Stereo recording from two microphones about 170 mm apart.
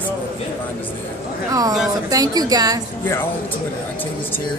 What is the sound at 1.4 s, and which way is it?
A woman's voice, 20° right (ahead or behind).